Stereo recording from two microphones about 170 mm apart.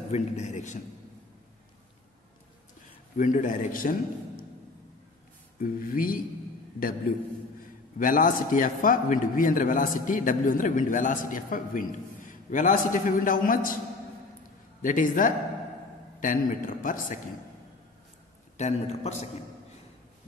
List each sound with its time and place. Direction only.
0.1 s a man's voice: 45° left (ahead or behind)
3.2 s a man's voice: 50° left (ahead or behind)
5.6 s speech: 55° left (ahead or behind)
8.0 s a man's voice: 55° left (ahead or behind)
14.8 s a man's voice: 50° left (ahead or behind)
18.6 s a man's voice: 40° left (ahead or behind)